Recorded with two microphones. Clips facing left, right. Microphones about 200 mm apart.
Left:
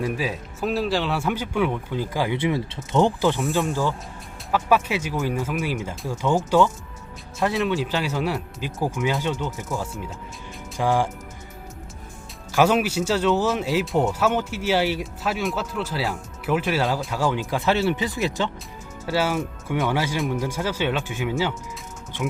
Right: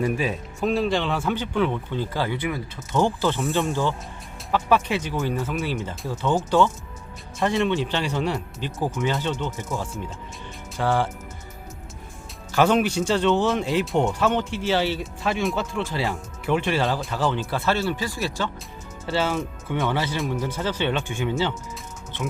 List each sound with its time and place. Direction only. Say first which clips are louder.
0.0 s speech: right 2 dB; centre (ahead or behind)
2.4 s pulleys: left 4 dB; 25° left (ahead or behind)
3.4 s speech: even; centre (ahead or behind)
12.5 s speech: even; 10° left (ahead or behind)